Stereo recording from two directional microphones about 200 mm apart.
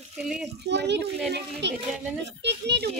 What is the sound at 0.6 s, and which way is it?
Speech, 60° right (ahead or behind).